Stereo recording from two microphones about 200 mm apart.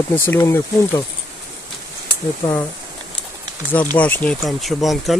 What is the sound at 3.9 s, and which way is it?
Speech, 5° left (ahead or behind).